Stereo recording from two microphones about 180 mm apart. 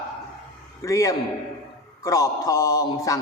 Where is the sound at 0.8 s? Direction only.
15° left (ahead or behind).